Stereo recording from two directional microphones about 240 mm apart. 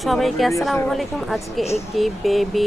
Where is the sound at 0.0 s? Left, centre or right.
Centre.